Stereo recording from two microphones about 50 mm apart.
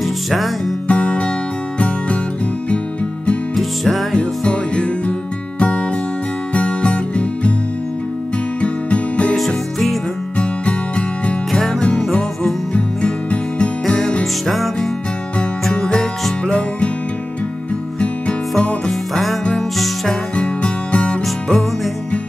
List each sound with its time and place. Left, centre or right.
0.0 s music: centre
0.8 s music: left
3.5 s music: centre
4.1 s music: centre
8.5 s music: left
10.3 s music: left
12.7 s music: left
13.8 s music: centre
15.7 s music: centre
18.9 s music: centre
20.3 s music: left